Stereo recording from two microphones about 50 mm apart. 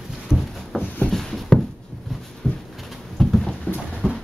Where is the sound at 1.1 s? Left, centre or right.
Centre.